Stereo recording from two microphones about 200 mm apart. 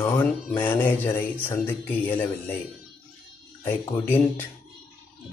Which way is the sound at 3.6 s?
10° left (ahead or behind).